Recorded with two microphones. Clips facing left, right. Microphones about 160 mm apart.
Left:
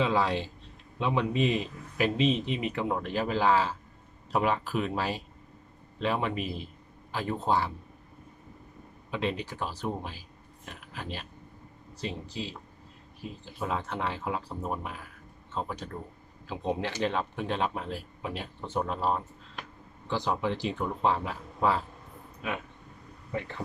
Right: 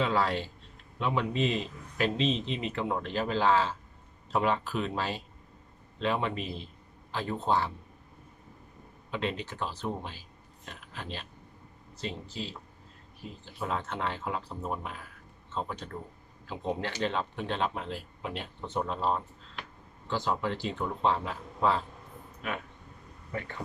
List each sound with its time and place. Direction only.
0.0 s speech: 15° left (ahead or behind)
9.0 s speech: 10° left (ahead or behind)
13.6 s speech: 10° left (ahead or behind)